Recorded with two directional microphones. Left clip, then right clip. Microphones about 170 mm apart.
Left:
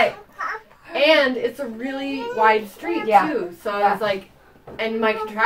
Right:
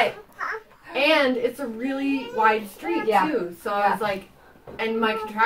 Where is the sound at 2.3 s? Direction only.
10° left (ahead or behind).